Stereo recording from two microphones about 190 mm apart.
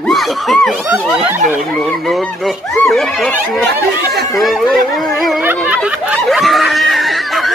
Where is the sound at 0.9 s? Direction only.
5° right (ahead or behind).